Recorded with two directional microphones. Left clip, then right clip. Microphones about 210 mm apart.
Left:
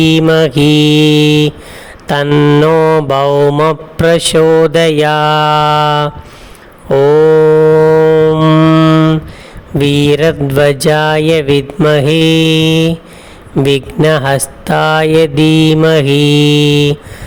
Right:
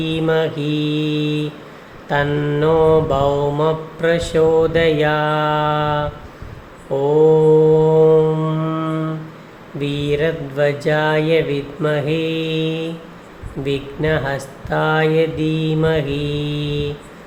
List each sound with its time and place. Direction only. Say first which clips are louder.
0.0 s mantra: left 9 dB; 55° left (ahead or behind)
6.9 s a sound: left 7 dB; 55° left (ahead or behind)
7.9 s music: left 6 dB; 40° left (ahead or behind)
9.7 s mantra: left 10 dB; 55° left (ahead or behind)